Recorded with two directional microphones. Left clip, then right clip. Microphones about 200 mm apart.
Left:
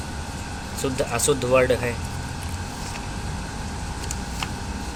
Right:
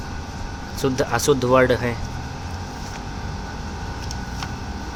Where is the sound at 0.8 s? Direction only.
45° right (ahead or behind).